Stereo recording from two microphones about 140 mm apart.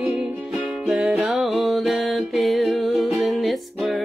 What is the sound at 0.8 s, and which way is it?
Music, centre (ahead or behind).